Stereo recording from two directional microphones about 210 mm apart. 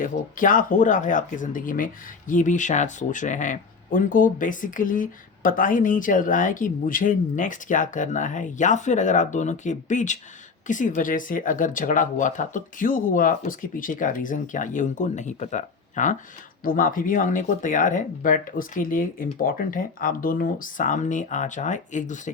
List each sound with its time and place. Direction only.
0.0 s speech: 40° left (ahead or behind)